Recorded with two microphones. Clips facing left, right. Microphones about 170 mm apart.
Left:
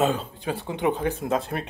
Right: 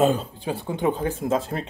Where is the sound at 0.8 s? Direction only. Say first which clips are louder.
Even; 5° left (ahead or behind).